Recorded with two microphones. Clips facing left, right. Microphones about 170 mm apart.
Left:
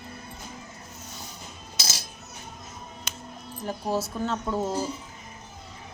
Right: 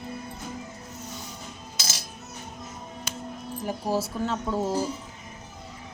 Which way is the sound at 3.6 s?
10° right (ahead or behind).